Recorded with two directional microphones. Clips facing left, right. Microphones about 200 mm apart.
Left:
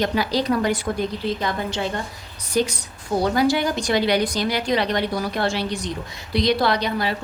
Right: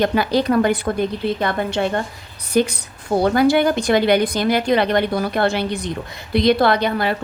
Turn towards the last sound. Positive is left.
turn(degrees=-55)  # may be behind; listen again after turning